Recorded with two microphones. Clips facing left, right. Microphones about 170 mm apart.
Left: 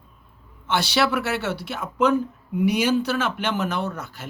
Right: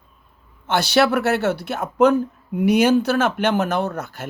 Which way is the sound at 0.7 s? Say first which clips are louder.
Right 5 dB; 45° right (ahead or behind).